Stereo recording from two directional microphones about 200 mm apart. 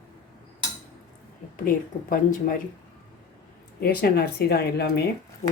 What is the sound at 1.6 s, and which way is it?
Speech, 45° left (ahead or behind).